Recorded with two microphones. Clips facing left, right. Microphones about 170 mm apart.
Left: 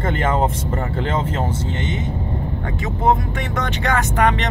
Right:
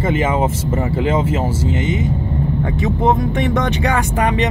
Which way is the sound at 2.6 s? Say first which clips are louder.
Right 5 dB; 20° right (ahead or behind).